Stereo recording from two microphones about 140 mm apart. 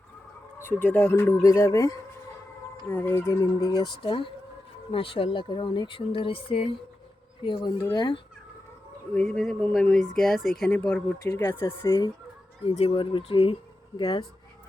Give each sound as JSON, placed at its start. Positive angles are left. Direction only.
{"t": 0.8, "sound": "speech", "side_deg": 10}
{"t": 3.8, "sound": "speech", "side_deg": 40}
{"t": 9.1, "sound": "speech", "side_deg": 5}
{"t": 12.6, "sound": "speech", "side_deg": 45}
{"t": 14.0, "sound": "speech", "side_deg": 30}